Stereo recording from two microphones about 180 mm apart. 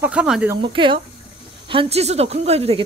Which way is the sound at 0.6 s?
30° right (ahead or behind).